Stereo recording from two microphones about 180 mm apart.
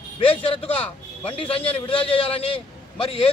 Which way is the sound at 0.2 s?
30° left (ahead or behind).